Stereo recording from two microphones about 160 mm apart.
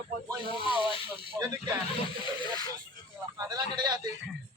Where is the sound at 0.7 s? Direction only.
35° right (ahead or behind).